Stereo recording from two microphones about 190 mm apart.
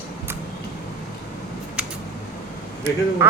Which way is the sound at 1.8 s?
5° right (ahead or behind).